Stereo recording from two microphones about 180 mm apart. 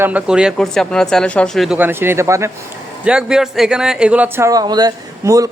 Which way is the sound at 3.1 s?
5° right (ahead or behind).